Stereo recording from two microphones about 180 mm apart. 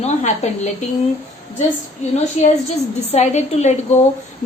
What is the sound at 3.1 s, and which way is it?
Speech, 40° left (ahead or behind).